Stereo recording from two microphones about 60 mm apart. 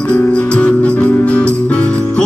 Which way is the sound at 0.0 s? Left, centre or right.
Left.